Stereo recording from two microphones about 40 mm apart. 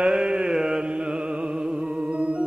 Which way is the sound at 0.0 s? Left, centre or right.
Centre.